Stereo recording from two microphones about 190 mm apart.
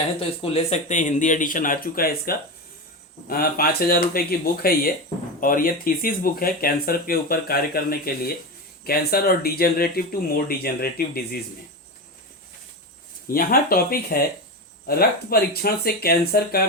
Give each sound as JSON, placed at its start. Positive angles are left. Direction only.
{"t": 0.2, "sound": "speech", "side_deg": 35}
{"t": 13.2, "sound": "speech", "side_deg": 50}